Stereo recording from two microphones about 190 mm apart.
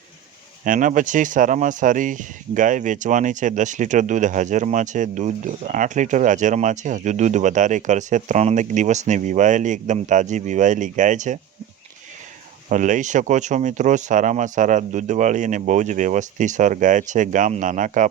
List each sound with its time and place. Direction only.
0.6 s speech: 45° right (ahead or behind)
12.6 s speech: 40° right (ahead or behind)